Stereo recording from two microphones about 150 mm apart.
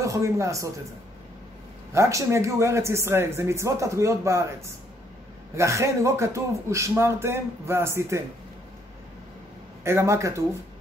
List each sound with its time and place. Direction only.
0.0 s a man's voice: 20° right (ahead or behind)
2.0 s speech: 20° right (ahead or behind)
9.8 s speech: 20° right (ahead or behind)